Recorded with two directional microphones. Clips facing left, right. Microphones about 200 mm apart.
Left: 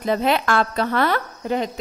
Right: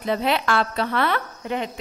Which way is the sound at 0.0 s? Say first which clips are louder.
Left 3 dB; 45° left (ahead or behind).